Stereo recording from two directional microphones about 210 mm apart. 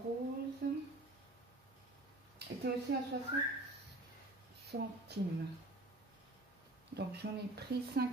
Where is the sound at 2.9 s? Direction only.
55° right (ahead or behind).